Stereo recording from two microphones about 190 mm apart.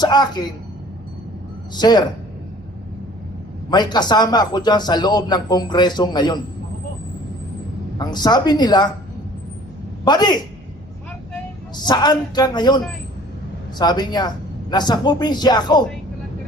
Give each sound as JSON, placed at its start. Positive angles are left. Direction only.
{"t": 0.0, "sound": "a man's voice", "side_deg": 20}
{"t": 1.7, "sound": "a man's voice", "side_deg": 20}
{"t": 3.7, "sound": "a man's voice", "side_deg": 20}
{"t": 7.9, "sound": "a man's voice", "side_deg": 20}
{"t": 10.0, "sound": "a man's voice", "side_deg": 20}
{"t": 11.8, "sound": "a man's voice", "side_deg": 20}